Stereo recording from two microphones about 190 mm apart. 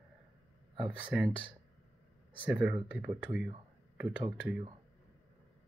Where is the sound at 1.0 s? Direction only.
5° right (ahead or behind).